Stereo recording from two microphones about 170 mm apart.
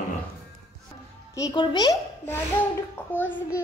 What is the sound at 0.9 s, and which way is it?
Music, 25° left (ahead or behind).